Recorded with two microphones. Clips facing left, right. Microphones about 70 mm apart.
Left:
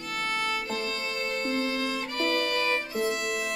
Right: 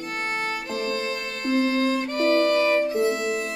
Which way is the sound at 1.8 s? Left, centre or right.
Right.